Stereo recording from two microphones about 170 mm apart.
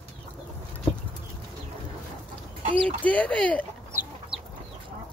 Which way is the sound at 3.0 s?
10° left (ahead or behind).